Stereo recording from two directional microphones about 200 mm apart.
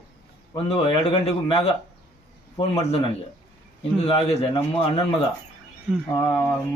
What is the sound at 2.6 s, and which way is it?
Speech, 25° left (ahead or behind).